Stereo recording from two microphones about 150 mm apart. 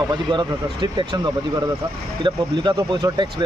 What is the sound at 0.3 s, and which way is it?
Speech, 30° right (ahead or behind).